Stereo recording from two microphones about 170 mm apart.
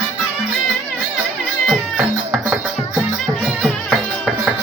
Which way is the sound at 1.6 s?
Centre (ahead or behind).